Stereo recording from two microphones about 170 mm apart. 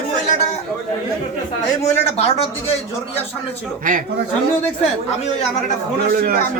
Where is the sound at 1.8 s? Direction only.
40° left (ahead or behind).